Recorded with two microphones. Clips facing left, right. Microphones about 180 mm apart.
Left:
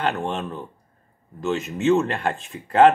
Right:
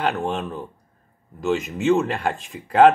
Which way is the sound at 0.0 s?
Centre (ahead or behind).